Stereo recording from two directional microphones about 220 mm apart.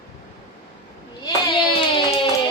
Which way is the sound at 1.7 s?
25° left (ahead or behind).